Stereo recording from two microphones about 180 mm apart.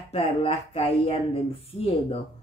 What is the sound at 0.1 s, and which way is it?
A man's voice, 35° left (ahead or behind).